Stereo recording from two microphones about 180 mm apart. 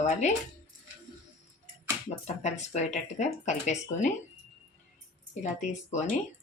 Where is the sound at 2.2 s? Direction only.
40° left (ahead or behind).